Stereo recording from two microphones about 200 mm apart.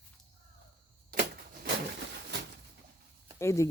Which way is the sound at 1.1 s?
50° right (ahead or behind).